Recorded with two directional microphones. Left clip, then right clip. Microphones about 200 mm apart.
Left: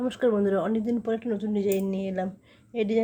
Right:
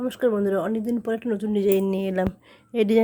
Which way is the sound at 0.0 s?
20° right (ahead or behind).